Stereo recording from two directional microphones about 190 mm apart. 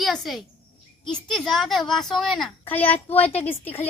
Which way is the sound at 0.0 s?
Centre (ahead or behind).